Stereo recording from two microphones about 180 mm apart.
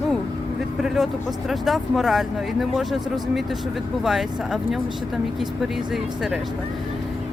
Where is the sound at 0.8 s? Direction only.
Centre (ahead or behind).